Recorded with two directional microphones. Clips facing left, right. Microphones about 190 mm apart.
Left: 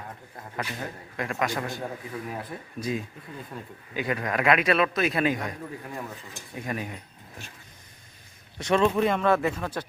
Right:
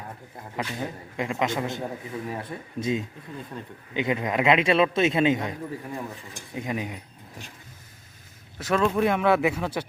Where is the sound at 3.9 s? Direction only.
20° right (ahead or behind).